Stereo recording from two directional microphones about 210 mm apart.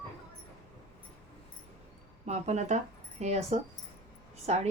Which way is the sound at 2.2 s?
30° right (ahead or behind).